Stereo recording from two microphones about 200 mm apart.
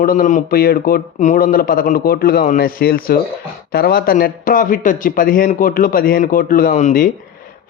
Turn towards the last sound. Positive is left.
turn(degrees=40)  # may be behind; listen again after turning